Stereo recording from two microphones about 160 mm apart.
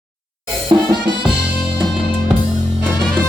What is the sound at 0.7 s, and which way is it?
Music, 30° right (ahead or behind).